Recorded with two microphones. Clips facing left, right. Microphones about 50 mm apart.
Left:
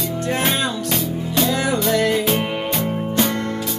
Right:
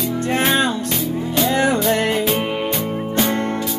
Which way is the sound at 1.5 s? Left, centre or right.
Right.